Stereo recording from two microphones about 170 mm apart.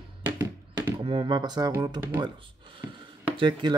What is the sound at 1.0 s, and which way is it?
Speech, 30° right (ahead or behind).